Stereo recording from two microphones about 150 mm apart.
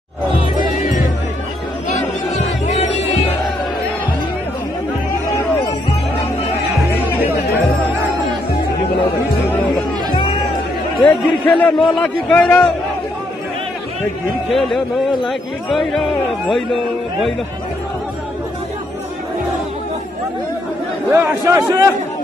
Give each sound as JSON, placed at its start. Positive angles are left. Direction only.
{"t": 2.3, "sound": "music", "side_deg": 45}
{"t": 11.1, "sound": "a man's voice", "side_deg": 10}
{"t": 14.5, "sound": "a man's voice", "side_deg": 0}
{"t": 21.1, "sound": "a man's voice", "side_deg": -20}